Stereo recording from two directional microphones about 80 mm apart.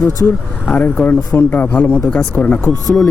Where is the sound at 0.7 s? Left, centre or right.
Centre.